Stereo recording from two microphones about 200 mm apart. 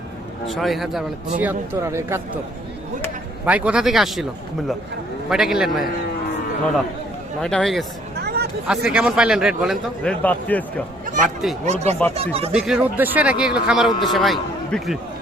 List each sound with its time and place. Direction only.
0.4 s speech: centre (ahead or behind)
1.4 s a man's voice: 10° right (ahead or behind)
3.4 s speech: 5° right (ahead or behind)
5.3 s speech: centre (ahead or behind)
7.4 s speech: centre (ahead or behind)
8.2 s hubbub: 55° right (ahead or behind)
8.6 s speech: 5° right (ahead or behind)
11.0 s a sound: 40° right (ahead or behind)
11.6 s speech: 35° right (ahead or behind)
12.5 s speech: 5° right (ahead or behind)